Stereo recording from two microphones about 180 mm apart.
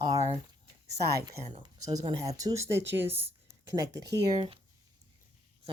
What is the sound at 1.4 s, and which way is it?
Speech, 35° right (ahead or behind).